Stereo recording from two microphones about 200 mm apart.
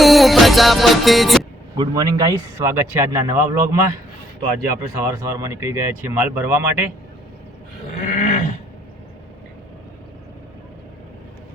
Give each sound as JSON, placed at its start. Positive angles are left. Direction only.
{"t": 0.0, "sound": "music", "side_deg": 0}
{"t": 1.8, "sound": "speech", "side_deg": -20}
{"t": 5.0, "sound": "speech", "side_deg": -15}
{"t": 8.0, "sound": "goat", "side_deg": 45}